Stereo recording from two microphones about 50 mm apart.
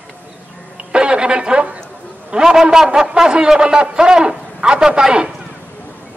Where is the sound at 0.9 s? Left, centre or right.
Centre.